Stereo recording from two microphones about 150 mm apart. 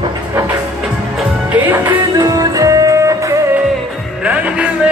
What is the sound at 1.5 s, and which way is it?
Music, 10° right (ahead or behind).